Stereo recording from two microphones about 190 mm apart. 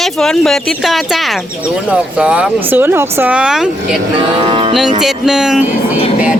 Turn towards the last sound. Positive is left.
turn(degrees=-5)  # may be behind; listen again after turning